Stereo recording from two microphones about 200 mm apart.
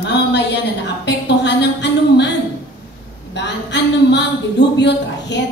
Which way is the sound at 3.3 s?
60° left (ahead or behind).